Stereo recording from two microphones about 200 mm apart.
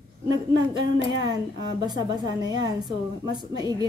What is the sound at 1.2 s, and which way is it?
A woman's voice, 20° right (ahead or behind).